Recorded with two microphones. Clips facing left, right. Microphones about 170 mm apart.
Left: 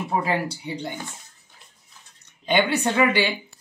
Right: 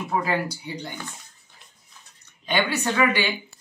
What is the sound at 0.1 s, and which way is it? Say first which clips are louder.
Speech: even; 25° left (ahead or behind).